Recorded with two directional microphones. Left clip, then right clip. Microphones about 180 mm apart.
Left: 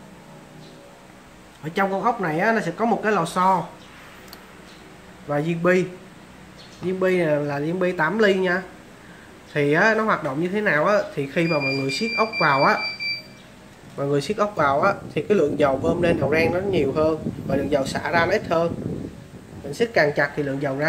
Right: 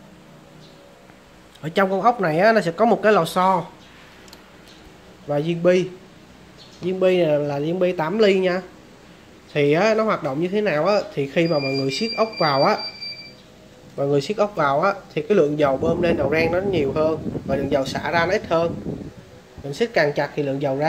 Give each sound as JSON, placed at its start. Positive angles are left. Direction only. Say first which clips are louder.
{"t": 1.6, "sound": "speech", "louder": "right 3 dB", "side_deg": -50}
{"t": 5.3, "sound": "speech", "louder": "right 2 dB", "side_deg": -20}
{"t": 7.0, "sound": "speech", "louder": "right 3 dB", "side_deg": -25}
{"t": 13.9, "sound": "speech", "louder": "right 2 dB", "side_deg": -20}
{"t": 19.7, "sound": "speech", "louder": "even", "side_deg": -25}